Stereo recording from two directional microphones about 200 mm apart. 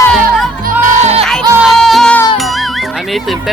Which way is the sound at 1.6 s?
Centre (ahead or behind).